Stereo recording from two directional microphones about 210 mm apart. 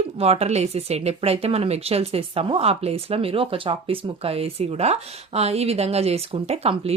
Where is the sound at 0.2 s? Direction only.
30° right (ahead or behind).